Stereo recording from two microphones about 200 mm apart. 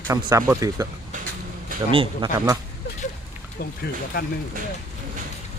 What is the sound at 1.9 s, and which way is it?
Speech, 25° right (ahead or behind).